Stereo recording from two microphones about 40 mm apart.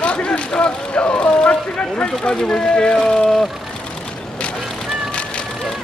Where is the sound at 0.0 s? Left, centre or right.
Left; by 3.4 s centre.